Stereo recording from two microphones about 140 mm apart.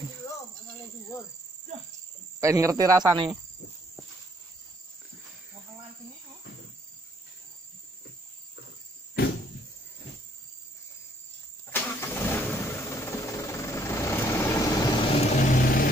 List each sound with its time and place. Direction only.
2.4 s speech: 20° right (ahead or behind)
11.7 s vehicle: 15° left (ahead or behind)
15.0 s vehicle: 50° left (ahead or behind); by 15.9 s 85° left